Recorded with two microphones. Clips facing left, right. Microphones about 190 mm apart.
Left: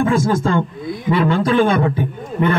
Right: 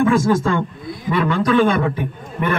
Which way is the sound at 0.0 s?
30° left (ahead or behind).